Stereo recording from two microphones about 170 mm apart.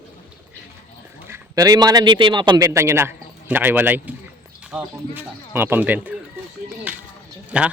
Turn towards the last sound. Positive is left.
turn(degrees=-5)  # may be behind; listen again after turning